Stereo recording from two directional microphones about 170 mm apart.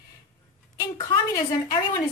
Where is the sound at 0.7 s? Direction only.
25° left (ahead or behind).